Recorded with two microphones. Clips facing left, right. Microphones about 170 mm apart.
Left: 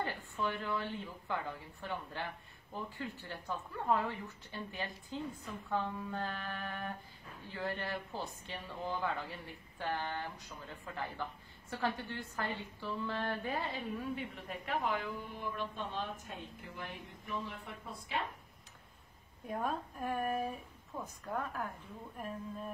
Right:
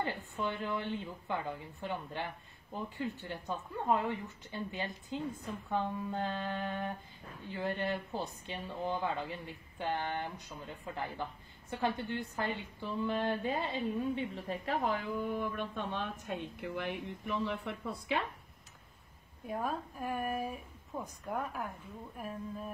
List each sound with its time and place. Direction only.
0.0 s a woman's voice: 20° right (ahead or behind)
14.8 s a woman's voice: 45° right (ahead or behind); by 18.1 s 75° right (ahead or behind)
19.4 s a woman's voice: 5° right (ahead or behind)